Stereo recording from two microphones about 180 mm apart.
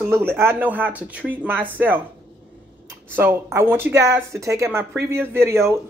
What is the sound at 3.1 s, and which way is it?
Speech, 10° right (ahead or behind).